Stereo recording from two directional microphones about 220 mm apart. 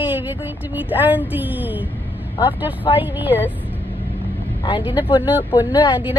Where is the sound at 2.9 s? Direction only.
10° right (ahead or behind).